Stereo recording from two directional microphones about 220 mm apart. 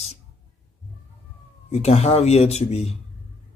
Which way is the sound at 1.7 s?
30° left (ahead or behind).